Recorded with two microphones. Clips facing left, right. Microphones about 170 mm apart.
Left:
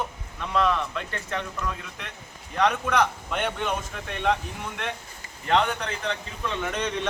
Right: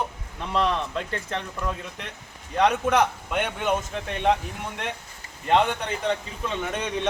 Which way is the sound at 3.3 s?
10° right (ahead or behind).